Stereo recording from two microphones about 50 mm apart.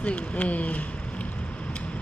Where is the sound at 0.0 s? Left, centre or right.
Left.